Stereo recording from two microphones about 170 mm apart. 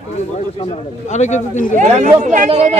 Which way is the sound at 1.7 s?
45° right (ahead or behind).